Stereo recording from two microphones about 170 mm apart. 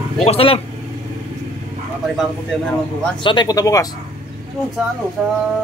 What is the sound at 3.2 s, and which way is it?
Speech, 30° left (ahead or behind).